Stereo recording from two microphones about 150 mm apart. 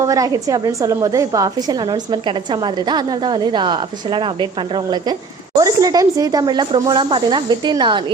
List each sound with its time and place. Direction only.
0.0 s a woman's voice: 20° right (ahead or behind)
5.5 s a woman's voice: 25° right (ahead or behind)